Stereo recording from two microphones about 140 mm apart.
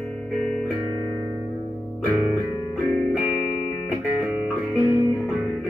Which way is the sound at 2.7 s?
5° left (ahead or behind).